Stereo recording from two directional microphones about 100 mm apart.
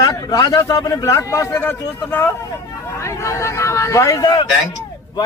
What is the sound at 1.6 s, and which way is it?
A man's voice, 20° left (ahead or behind).